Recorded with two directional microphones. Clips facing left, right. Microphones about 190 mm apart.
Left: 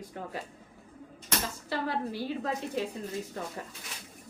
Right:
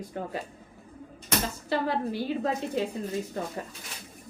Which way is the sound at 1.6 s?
20° right (ahead or behind).